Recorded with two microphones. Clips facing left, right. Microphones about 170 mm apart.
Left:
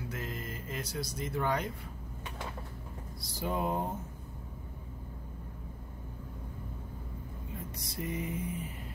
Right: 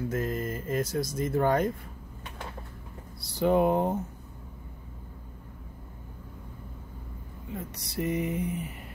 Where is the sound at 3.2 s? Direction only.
65° right (ahead or behind).